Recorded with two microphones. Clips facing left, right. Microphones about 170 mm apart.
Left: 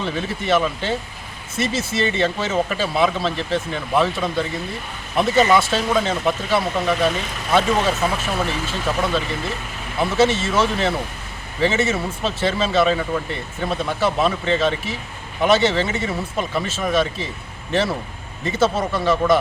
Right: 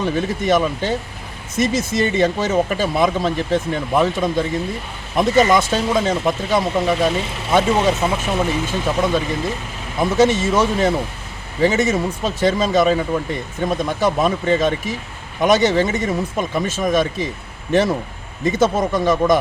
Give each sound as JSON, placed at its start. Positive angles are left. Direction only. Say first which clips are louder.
{"t": 0.4, "sound": "speech", "louder": "right 1 dB", "side_deg": -15}
{"t": 2.6, "sound": "speech", "louder": "right 3 dB", "side_deg": -45}
{"t": 3.0, "sound": "speech", "louder": "right 1 dB", "side_deg": -15}
{"t": 6.9, "sound": "speech", "louder": "right 2 dB", "side_deg": -25}